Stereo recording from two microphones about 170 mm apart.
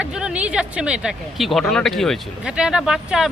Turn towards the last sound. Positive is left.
turn(degrees=-5)  # may be behind; listen again after turning